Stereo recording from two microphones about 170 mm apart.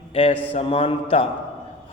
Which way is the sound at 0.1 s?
35° left (ahead or behind).